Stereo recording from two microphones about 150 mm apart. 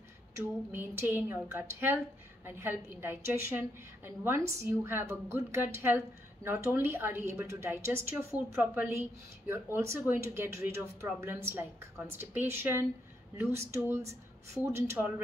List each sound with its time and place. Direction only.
0.4 s a woman's voice: 15° right (ahead or behind)